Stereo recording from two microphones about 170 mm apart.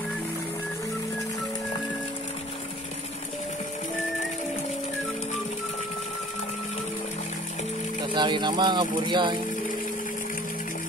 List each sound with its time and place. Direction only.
8.1 s speech: 25° right (ahead or behind)